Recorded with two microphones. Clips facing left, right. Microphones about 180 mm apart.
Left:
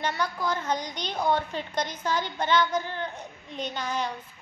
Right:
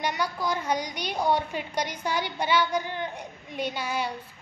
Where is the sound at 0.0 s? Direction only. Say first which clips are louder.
Even; 10° right (ahead or behind).